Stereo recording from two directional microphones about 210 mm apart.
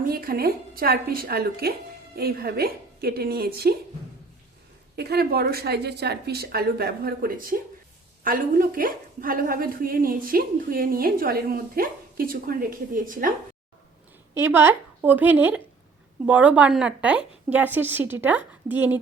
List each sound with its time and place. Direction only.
0.1 s a woman's voice: 45° right (ahead or behind)
4.9 s a woman's voice: 50° right (ahead or behind)
14.3 s a woman's voice: 10° right (ahead or behind)